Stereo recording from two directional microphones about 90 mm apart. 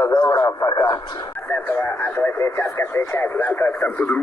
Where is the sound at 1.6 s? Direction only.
25° left (ahead or behind).